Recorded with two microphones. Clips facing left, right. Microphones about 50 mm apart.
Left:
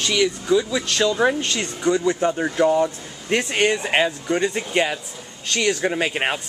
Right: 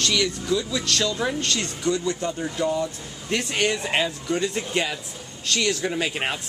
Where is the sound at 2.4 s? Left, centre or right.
Left.